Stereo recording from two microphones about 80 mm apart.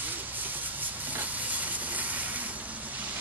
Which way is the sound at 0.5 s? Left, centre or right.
Right.